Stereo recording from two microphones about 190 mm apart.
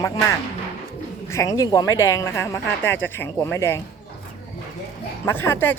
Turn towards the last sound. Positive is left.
turn(degrees=10)  # may be behind; listen again after turning